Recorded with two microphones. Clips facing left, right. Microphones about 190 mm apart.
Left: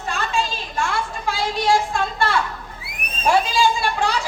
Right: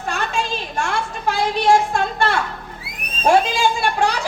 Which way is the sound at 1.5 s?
55° right (ahead or behind).